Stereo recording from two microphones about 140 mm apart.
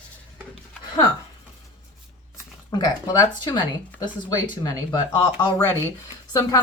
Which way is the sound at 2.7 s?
25° left (ahead or behind).